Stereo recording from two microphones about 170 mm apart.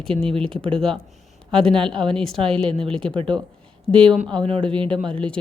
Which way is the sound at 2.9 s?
5° left (ahead or behind).